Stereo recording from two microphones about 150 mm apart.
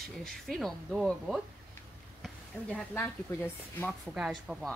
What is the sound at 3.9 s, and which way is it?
Speech, 5° right (ahead or behind).